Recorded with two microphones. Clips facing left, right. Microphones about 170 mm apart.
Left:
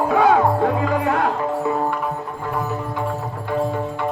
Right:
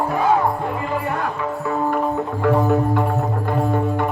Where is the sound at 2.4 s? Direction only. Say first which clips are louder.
Right 9 dB; 55° right (ahead or behind).